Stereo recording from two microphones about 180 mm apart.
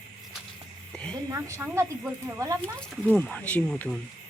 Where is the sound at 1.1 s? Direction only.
15° right (ahead or behind).